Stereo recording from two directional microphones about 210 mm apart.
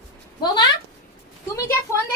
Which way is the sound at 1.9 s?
15° left (ahead or behind).